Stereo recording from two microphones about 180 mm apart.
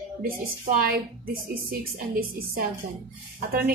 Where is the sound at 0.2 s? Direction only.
55° right (ahead or behind).